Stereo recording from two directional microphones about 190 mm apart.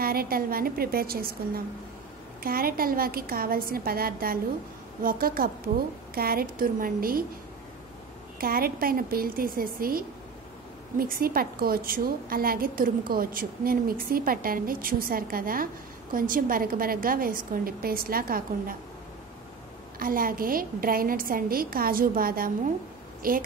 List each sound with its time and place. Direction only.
0.0 s a woman's voice: 50° right (ahead or behind)
8.4 s a woman's voice: 50° right (ahead or behind)
20.0 s a woman's voice: 50° right (ahead or behind)